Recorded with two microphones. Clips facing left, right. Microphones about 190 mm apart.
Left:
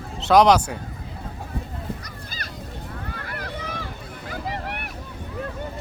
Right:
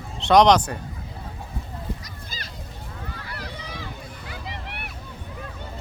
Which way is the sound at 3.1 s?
55° left (ahead or behind).